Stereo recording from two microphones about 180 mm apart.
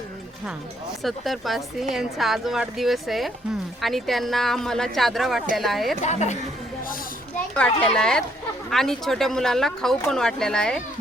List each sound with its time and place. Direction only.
1.0 s speech: centre (ahead or behind)
6.1 s speech: 40° left (ahead or behind)
7.5 s speech: 5° left (ahead or behind)